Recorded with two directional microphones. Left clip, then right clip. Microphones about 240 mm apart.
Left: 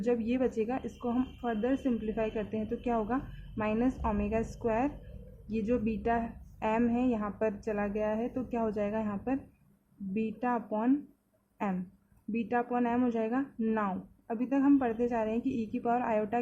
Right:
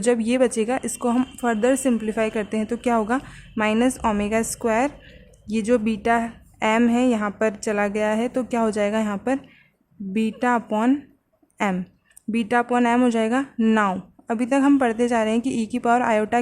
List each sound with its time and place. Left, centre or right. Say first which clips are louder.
0.0 s a woman's voice: right 11 dB; right